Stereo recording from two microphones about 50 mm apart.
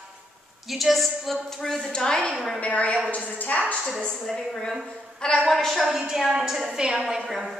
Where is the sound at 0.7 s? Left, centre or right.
Centre.